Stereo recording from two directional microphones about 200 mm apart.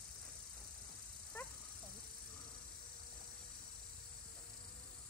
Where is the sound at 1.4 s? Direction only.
10° left (ahead or behind).